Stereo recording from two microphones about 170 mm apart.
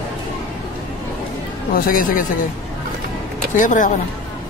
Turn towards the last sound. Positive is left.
turn(degrees=50)  # may be behind; listen again after turning